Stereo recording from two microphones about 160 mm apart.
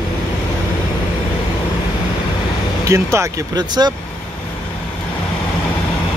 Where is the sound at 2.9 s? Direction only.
20° right (ahead or behind).